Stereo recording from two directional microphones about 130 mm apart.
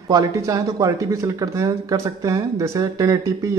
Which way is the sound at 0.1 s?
25° right (ahead or behind).